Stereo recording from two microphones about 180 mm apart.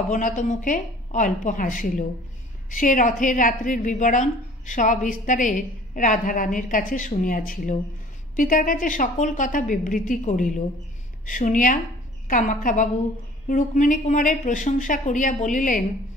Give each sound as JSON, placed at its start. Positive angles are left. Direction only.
{"t": 0.1, "sound": "a woman's voice", "side_deg": 45}